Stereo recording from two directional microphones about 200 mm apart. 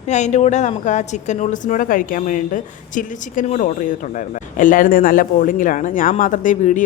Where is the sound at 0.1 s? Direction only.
35° left (ahead or behind).